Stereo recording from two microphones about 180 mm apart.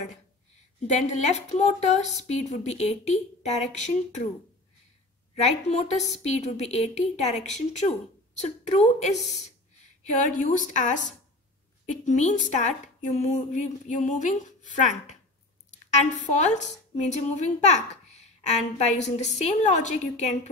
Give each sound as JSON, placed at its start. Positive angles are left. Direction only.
{"t": 0.7, "sound": "a woman's voice", "side_deg": 40}
{"t": 5.4, "sound": "a woman's voice", "side_deg": 40}
{"t": 16.3, "sound": "a child's voice", "side_deg": 40}